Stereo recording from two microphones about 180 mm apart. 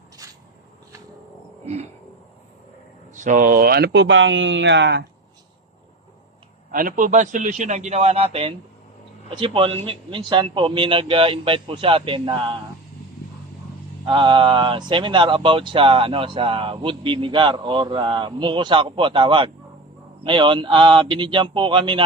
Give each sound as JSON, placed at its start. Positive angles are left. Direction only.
{"t": 0.2, "sound": "a sound", "side_deg": -20}
{"t": 1.6, "sound": "wheeze", "side_deg": -35}
{"t": 3.2, "sound": "speech", "side_deg": -45}
{"t": 6.7, "sound": "a man's voice", "side_deg": -50}
{"t": 14.1, "sound": "speech", "side_deg": -25}